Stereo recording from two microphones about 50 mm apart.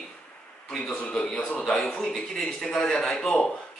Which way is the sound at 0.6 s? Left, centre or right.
Centre.